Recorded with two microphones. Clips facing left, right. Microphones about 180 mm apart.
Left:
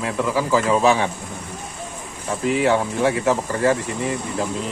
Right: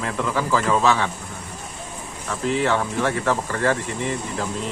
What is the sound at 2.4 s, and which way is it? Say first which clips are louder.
Speech: left 3 dB; 10° left (ahead or behind).